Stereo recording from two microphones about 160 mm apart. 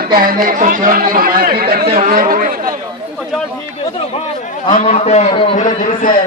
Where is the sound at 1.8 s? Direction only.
45° right (ahead or behind); by 2.7 s 65° right (ahead or behind).